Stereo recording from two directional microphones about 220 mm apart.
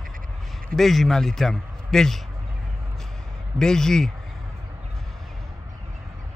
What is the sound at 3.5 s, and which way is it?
Speech, 5° left (ahead or behind).